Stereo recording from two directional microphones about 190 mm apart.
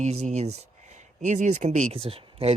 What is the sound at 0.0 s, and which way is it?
Speech, 35° right (ahead or behind).